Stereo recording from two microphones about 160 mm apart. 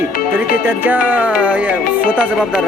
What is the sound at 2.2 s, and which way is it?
Speech, centre (ahead or behind).